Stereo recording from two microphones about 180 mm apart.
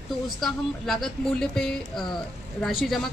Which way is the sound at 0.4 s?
Centre (ahead or behind).